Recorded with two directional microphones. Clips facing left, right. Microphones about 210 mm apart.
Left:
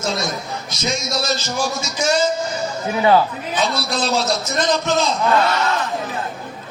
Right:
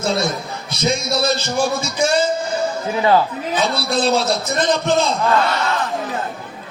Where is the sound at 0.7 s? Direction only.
55° right (ahead or behind).